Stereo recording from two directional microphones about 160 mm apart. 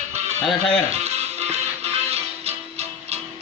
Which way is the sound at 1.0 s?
40° right (ahead or behind).